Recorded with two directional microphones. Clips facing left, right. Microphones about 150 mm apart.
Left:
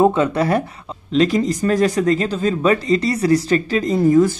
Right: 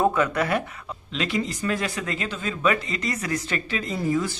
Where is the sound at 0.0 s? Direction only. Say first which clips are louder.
Left 7 dB; 25° left (ahead or behind).